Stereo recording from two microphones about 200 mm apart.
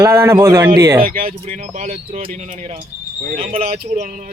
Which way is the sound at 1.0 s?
45° right (ahead or behind).